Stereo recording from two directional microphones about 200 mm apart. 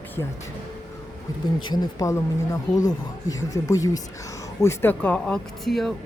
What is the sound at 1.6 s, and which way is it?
Speech, 20° left (ahead or behind).